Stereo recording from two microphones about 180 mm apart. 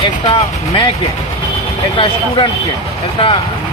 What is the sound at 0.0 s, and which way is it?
Speech, 25° left (ahead or behind).